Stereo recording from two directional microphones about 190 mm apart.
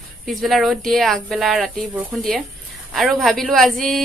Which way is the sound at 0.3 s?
Centre (ahead or behind).